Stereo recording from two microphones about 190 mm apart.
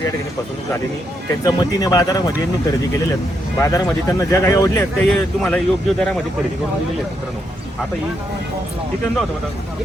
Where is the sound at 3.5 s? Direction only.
15° left (ahead or behind).